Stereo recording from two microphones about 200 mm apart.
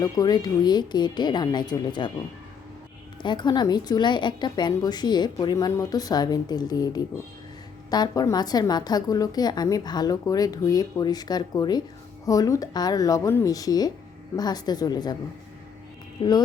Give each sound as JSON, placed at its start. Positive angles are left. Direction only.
{"t": 0.0, "sound": "a woman's voice", "side_deg": 20}
{"t": 3.2, "sound": "a woman's voice", "side_deg": 20}